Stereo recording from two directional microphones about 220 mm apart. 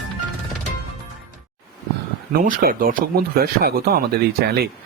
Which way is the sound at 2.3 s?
40° right (ahead or behind).